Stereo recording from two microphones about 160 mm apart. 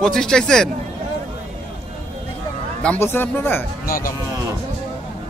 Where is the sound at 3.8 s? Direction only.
60° left (ahead or behind).